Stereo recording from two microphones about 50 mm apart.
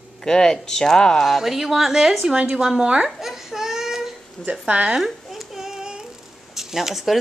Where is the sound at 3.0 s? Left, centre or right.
Centre.